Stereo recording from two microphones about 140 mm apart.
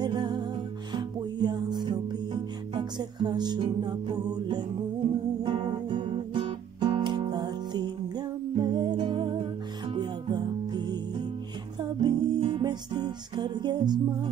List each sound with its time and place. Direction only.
0.0 s music: 30° right (ahead or behind)
12.0 s music: 35° right (ahead or behind)